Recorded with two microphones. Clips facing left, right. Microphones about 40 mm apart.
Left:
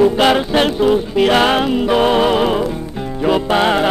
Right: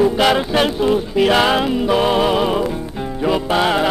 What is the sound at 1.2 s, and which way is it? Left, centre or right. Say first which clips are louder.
Music: left 1 dB; left.